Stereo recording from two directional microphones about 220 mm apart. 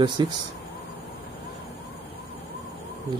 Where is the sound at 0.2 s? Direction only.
20° right (ahead or behind).